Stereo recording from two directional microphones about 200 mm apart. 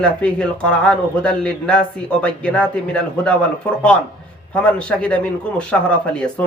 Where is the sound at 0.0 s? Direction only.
5° left (ahead or behind).